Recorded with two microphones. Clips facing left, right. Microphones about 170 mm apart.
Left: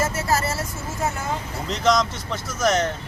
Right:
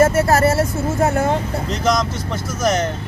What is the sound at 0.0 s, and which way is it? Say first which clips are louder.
Speech: right 9 dB; 55° right (ahead or behind).